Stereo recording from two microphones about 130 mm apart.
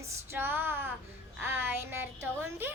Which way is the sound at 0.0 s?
20° right (ahead or behind).